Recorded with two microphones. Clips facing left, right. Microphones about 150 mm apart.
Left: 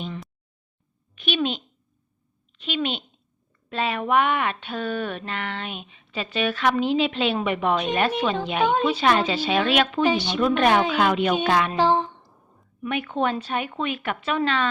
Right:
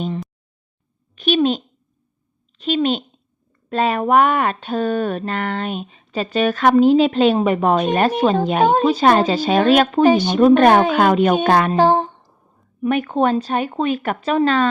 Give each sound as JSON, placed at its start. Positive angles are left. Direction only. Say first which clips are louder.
{"t": 1.1, "sound": "a child's voice", "louder": "right 9 dB", "side_deg": -40}